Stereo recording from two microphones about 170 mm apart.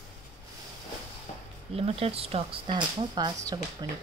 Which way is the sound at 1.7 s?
35° right (ahead or behind).